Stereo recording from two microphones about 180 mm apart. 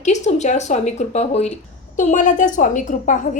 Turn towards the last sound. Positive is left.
turn(degrees=45)  # may be behind; listen again after turning